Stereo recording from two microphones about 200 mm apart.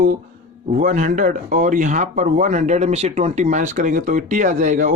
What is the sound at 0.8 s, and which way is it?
Speech, 40° right (ahead or behind).